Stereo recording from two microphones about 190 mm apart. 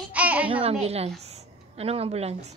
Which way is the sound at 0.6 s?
35° right (ahead or behind).